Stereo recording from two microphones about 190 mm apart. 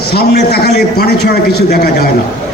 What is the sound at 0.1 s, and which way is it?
A man's voice, 55° left (ahead or behind).